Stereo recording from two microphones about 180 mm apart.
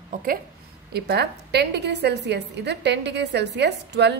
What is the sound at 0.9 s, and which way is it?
A woman's voice, 65° right (ahead or behind).